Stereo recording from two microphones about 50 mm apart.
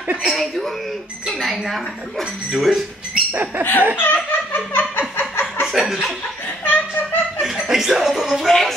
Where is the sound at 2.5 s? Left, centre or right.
Centre.